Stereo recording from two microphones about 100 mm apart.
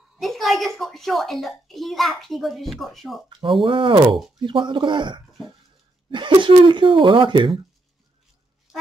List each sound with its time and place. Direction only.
0.2 s speech: centre (ahead or behind)
3.3 s speech: 55° right (ahead or behind)